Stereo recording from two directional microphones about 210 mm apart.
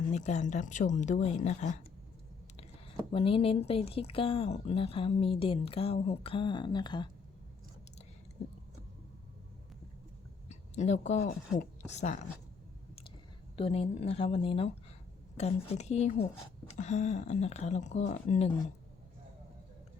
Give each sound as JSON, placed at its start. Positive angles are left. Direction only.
{"t": 0.1, "sound": "speech", "side_deg": 35}
{"t": 3.1, "sound": "speech", "side_deg": 25}
{"t": 10.5, "sound": "speech", "side_deg": 30}
{"t": 13.6, "sound": "speech", "side_deg": 30}